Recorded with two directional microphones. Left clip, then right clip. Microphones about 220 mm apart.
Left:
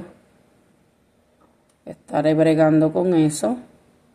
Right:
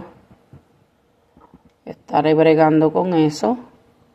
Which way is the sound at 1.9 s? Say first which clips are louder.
Right 3 dB; 35° right (ahead or behind).